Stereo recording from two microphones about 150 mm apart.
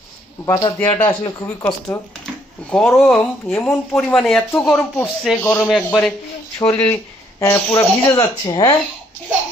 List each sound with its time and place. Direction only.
0.4 s speech: 25° left (ahead or behind)
0.8 s a man's voice: 10° left (ahead or behind)
1.0 s speech: 25° left (ahead or behind)
2.2 s a sound: 5° left (ahead or behind)
3.0 s speech: 5° left (ahead or behind)
6.6 s speech: 20° left (ahead or behind)